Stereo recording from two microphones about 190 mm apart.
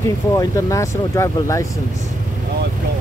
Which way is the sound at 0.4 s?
15° left (ahead or behind).